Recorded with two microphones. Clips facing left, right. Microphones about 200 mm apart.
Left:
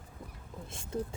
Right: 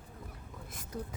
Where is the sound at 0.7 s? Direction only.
25° left (ahead or behind).